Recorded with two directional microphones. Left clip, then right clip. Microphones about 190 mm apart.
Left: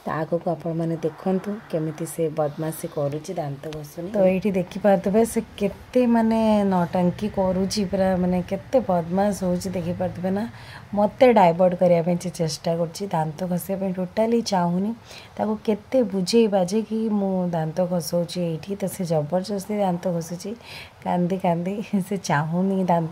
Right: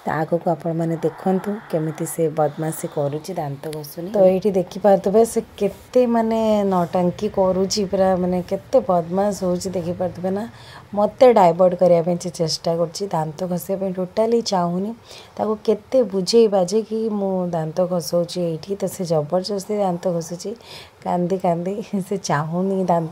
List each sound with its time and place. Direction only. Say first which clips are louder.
0.0 s speech: right 4 dB; 15° right (ahead or behind)
4.1 s a woman's voice: right 5 dB; 15° right (ahead or behind)